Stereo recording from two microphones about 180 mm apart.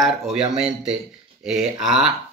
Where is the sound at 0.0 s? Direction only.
Centre (ahead or behind).